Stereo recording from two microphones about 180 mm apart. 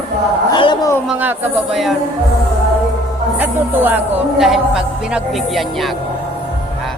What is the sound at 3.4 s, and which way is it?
Speech, 10° right (ahead or behind).